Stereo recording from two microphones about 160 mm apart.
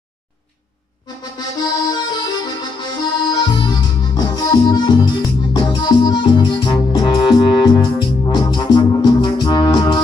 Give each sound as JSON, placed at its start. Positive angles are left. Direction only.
{"t": 1.0, "sound": "accordion", "side_deg": 25}
{"t": 4.4, "sound": "music", "side_deg": 25}